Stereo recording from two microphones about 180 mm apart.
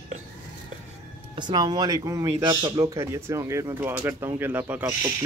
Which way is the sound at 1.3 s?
25° right (ahead or behind).